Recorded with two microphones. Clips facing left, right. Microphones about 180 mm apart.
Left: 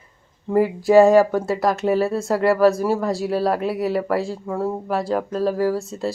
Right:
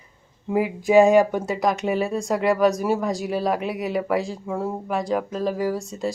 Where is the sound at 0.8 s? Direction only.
15° right (ahead or behind).